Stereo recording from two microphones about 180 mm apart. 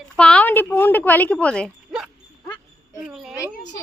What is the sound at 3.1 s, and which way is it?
Speech, centre (ahead or behind).